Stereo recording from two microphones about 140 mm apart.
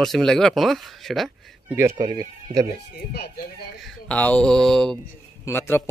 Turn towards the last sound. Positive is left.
turn(degrees=15)  # may be behind; listen again after turning